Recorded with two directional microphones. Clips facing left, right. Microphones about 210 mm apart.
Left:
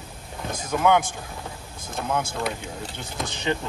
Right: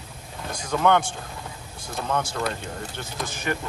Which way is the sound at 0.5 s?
10° left (ahead or behind).